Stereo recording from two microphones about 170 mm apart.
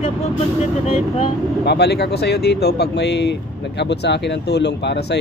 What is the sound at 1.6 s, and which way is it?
Speech, 75° left (ahead or behind).